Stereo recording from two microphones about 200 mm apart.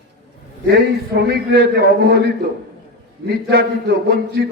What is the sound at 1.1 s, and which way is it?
A man's voice, 50° right (ahead or behind).